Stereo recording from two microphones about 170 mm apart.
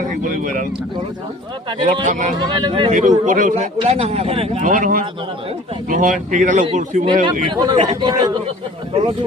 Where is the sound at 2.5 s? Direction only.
30° right (ahead or behind).